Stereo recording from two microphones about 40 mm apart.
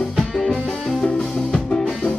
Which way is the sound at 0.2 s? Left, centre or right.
Centre.